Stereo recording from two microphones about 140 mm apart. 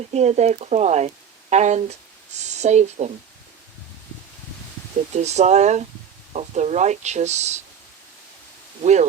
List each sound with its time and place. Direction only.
0.1 s speech: 50° right (ahead or behind)
5.1 s speech: 55° right (ahead or behind)
8.8 s speech: 55° right (ahead or behind)